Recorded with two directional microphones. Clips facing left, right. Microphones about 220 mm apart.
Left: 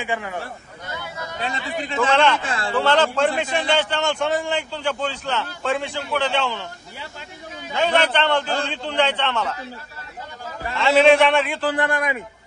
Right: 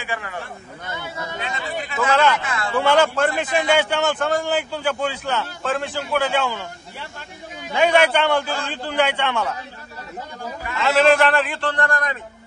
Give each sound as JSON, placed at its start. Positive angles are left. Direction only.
{"t": 0.0, "sound": "speech", "side_deg": 15}
{"t": 2.0, "sound": "a man's voice", "side_deg": -10}
{"t": 7.7, "sound": "a man's voice", "side_deg": -10}
{"t": 10.8, "sound": "a man's voice", "side_deg": 0}